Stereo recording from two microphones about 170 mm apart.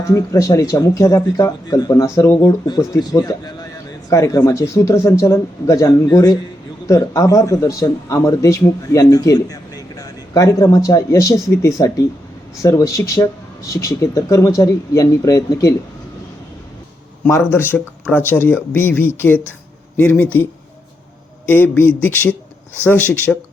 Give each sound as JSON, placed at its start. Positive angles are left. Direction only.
{"t": 0.1, "sound": "speech", "side_deg": 20}
{"t": 17.2, "sound": "speech", "side_deg": 15}